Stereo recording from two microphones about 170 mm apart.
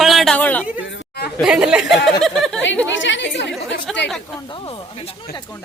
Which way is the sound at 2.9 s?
90° left.